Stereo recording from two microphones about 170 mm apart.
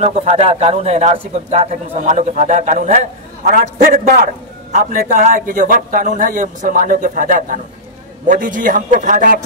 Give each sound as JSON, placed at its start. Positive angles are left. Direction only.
{"t": 0.0, "sound": "a man's voice", "side_deg": -40}